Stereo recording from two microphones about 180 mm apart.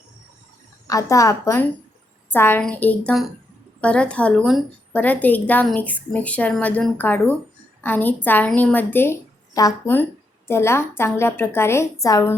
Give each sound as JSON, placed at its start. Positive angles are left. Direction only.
{"t": 0.9, "sound": "a woman's voice", "side_deg": 20}